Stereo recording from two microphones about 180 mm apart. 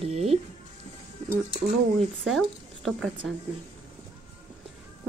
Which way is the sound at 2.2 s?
Centre (ahead or behind).